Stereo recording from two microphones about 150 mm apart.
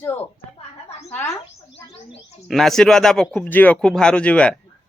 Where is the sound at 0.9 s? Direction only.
45° left (ahead or behind).